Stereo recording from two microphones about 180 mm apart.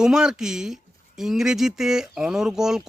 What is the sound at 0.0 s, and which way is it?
Speech, 5° right (ahead or behind).